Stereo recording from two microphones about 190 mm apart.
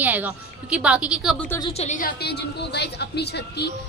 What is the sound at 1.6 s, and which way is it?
Speech, 35° left (ahead or behind).